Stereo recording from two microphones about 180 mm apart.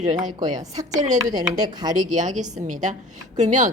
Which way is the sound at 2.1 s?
45° right (ahead or behind).